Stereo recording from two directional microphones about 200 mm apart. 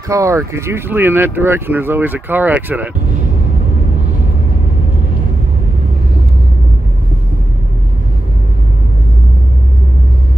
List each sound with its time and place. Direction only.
0.1 s speech: 15° right (ahead or behind)